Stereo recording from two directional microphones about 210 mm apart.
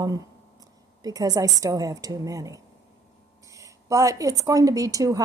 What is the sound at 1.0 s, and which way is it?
A woman's voice, 15° right (ahead or behind).